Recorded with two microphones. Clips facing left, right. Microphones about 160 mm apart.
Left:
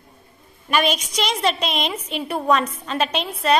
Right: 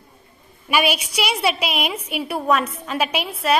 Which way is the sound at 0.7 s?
10° right (ahead or behind).